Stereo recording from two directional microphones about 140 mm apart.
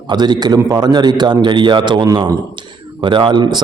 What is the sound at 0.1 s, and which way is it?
A man's voice, 30° right (ahead or behind).